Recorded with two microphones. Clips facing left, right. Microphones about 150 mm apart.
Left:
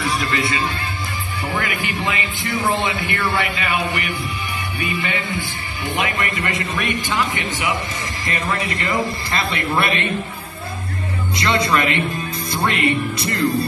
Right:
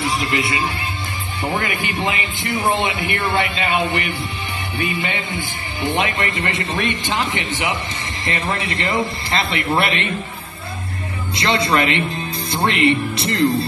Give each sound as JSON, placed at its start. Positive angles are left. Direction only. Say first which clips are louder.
{"t": 0.0, "sound": "a man's voice", "louder": "right 1 dB", "side_deg": -25}
{"t": 11.4, "sound": "a man's voice", "louder": "right 1 dB", "side_deg": -25}